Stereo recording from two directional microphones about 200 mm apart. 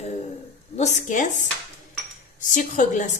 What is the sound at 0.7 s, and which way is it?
Speech, 35° left (ahead or behind).